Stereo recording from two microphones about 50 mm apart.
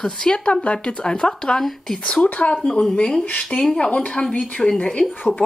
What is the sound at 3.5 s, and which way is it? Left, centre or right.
A woman's voice, centre.